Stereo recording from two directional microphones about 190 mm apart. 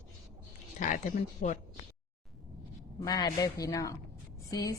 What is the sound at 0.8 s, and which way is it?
Speech, 40° left (ahead or behind).